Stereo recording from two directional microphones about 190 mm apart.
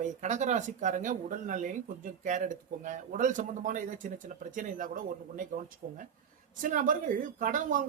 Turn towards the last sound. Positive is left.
turn(degrees=-45)  # may be behind; listen again after turning